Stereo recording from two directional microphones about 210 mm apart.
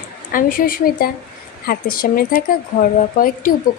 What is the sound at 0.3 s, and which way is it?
A woman's voice, 40° left (ahead or behind).